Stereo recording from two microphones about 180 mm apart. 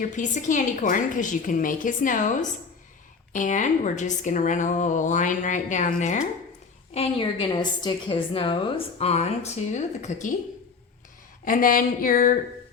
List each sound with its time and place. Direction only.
0.0 s a woman's voice: 45° left (ahead or behind)
6.9 s a woman's voice: 30° left (ahead or behind)
11.4 s a woman's voice: 50° left (ahead or behind)